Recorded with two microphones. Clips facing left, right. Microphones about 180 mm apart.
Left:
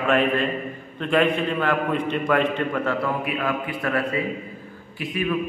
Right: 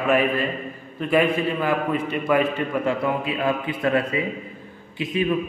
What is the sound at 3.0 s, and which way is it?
A man's voice, 25° right (ahead or behind).